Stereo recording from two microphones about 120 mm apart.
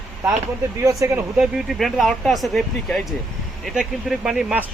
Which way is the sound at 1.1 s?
15° right (ahead or behind).